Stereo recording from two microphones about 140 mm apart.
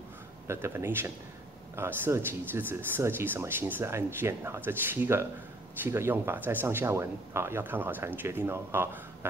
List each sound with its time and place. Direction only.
0.5 s speech: 20° right (ahead or behind)